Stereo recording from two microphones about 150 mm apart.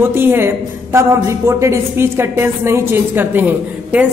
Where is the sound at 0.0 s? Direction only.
15° right (ahead or behind).